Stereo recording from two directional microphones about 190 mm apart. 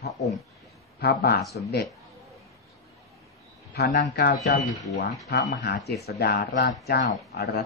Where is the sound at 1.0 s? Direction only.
55° left (ahead or behind).